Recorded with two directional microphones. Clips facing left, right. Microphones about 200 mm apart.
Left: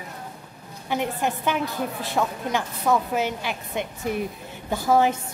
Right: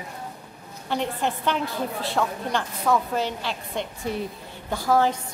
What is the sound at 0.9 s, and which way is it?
A woman's voice, 10° left (ahead or behind).